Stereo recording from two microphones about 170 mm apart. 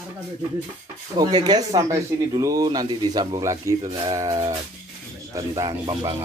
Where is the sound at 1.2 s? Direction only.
25° right (ahead or behind).